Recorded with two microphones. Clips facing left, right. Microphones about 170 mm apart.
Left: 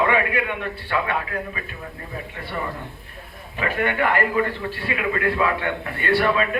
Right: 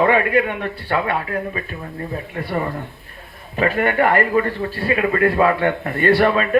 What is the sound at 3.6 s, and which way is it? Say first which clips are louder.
A man's voice: right 5 dB; 45° right (ahead or behind).